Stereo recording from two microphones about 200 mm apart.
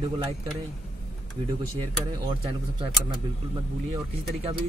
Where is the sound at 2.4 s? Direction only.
25° right (ahead or behind).